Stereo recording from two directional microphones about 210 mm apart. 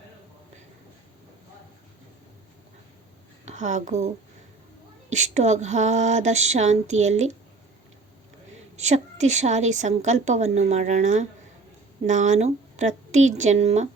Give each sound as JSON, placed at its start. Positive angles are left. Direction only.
{"t": 3.4, "sound": "a woman's voice", "side_deg": -35}
{"t": 5.1, "sound": "a woman's voice", "side_deg": -35}
{"t": 8.7, "sound": "a woman's voice", "side_deg": -35}